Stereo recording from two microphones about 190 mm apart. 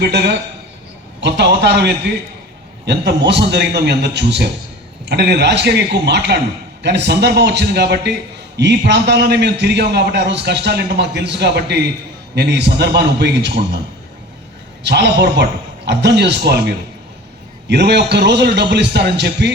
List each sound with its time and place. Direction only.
0.0 s a man's voice: 60° right (ahead or behind)
14.8 s a man's voice: 65° right (ahead or behind)